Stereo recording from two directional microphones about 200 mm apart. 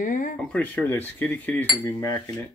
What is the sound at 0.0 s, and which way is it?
Speech, 40° left (ahead or behind).